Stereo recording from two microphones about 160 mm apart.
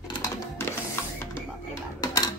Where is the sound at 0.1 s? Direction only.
20° left (ahead or behind).